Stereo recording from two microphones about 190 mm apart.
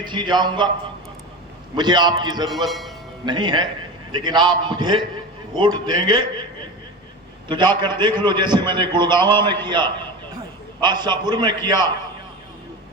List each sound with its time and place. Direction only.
0.0 s a man's voice: 25° right (ahead or behind)
1.7 s a man's voice: 25° right (ahead or behind)
2.6 s speech: centre (ahead or behind)
3.2 s a man's voice: 25° right (ahead or behind)
7.4 s a man's voice: 25° right (ahead or behind)